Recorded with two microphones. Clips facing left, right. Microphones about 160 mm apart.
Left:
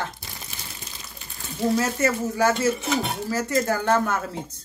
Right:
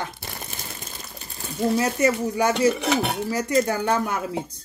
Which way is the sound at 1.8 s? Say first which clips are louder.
Right 2 dB; 15° right (ahead or behind).